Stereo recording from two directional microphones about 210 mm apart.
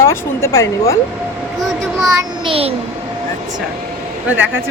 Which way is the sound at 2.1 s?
20° right (ahead or behind).